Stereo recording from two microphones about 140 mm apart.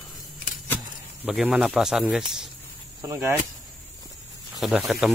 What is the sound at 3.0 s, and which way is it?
Speech, 20° right (ahead or behind).